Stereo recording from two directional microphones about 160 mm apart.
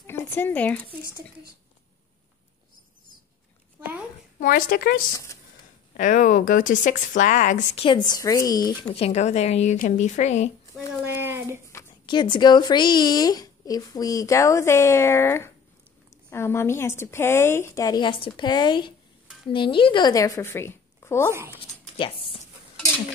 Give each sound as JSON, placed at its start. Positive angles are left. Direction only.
{"t": 0.0, "sound": "speech", "side_deg": 15}
{"t": 4.4, "sound": "speech", "side_deg": 60}
{"t": 5.9, "sound": "speech", "side_deg": 55}
{"t": 7.8, "sound": "speech", "side_deg": 30}
{"t": 8.8, "sound": "speech", "side_deg": 40}
{"t": 11.1, "sound": "a sound", "side_deg": -15}
{"t": 12.1, "sound": "a woman's voice", "side_deg": 30}
{"t": 21.3, "sound": "speech", "side_deg": -15}
{"t": 21.9, "sound": "a sound", "side_deg": 35}